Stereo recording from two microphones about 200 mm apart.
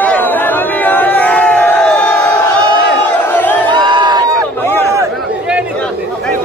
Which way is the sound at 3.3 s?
10° left (ahead or behind).